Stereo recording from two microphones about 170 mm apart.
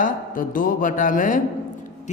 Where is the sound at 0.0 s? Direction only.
55° left (ahead or behind).